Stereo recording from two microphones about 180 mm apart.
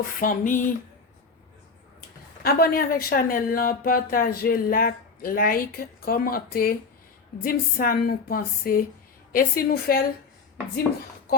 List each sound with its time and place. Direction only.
0.2 s a woman's voice: 45° left (ahead or behind)
2.4 s a woman's voice: 55° left (ahead or behind)